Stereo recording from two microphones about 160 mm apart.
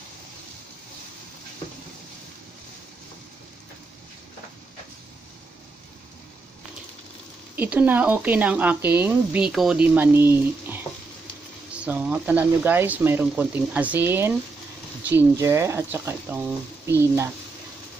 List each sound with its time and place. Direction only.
7.5 s speech: 10° right (ahead or behind)
11.8 s speech: 10° right (ahead or behind)